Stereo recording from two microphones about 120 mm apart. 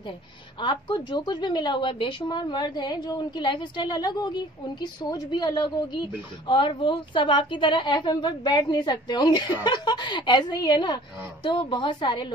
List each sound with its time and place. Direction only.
0.6 s a woman's voice: 40° left (ahead or behind)